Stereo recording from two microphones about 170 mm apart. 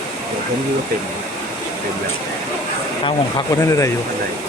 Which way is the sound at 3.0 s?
25° left (ahead or behind).